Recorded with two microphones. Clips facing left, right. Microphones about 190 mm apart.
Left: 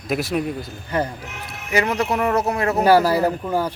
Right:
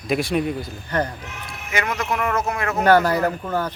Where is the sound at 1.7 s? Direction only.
35° left (ahead or behind).